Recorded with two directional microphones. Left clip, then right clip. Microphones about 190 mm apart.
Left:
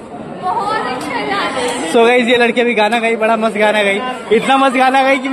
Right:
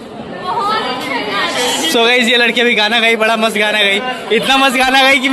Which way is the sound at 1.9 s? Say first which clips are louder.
Left 2 dB; 10° left (ahead or behind).